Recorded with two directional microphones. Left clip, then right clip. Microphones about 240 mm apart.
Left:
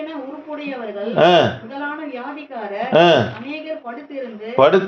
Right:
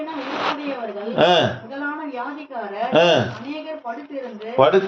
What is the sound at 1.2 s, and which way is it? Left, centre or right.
Speech, left.